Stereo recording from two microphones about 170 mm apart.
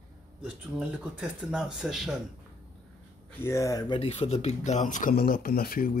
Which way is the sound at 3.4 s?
15° left (ahead or behind).